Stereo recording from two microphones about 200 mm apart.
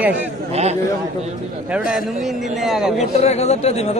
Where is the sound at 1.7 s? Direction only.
5° right (ahead or behind).